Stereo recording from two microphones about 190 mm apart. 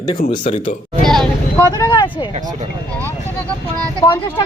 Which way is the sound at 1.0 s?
Centre (ahead or behind).